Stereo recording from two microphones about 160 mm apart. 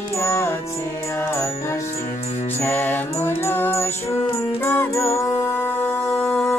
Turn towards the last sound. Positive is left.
turn(degrees=5)  # may be behind; listen again after turning